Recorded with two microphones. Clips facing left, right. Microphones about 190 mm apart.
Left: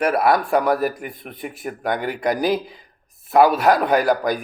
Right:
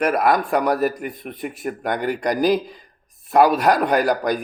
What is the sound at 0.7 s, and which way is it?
Speech, centre (ahead or behind).